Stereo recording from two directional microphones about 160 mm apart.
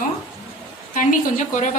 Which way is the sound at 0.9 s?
55° left (ahead or behind).